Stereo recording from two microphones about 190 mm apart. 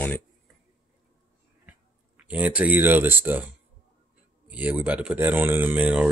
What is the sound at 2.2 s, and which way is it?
Speech, 5° right (ahead or behind).